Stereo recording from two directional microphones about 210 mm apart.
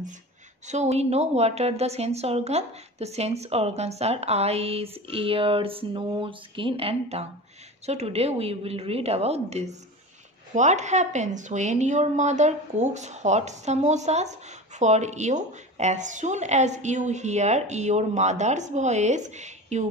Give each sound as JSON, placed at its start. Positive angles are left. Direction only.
{"t": 0.7, "sound": "a woman's voice", "side_deg": -35}